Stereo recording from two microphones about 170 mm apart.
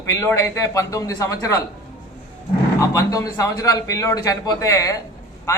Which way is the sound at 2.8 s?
20° left (ahead or behind).